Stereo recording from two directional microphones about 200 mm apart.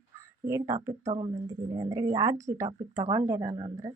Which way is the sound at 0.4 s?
15° right (ahead or behind).